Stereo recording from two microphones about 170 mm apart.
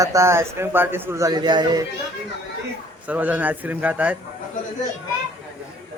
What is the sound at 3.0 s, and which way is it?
Speech, 10° right (ahead or behind).